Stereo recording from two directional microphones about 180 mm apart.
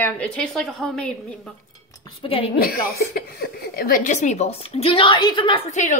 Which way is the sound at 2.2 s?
30° left (ahead or behind).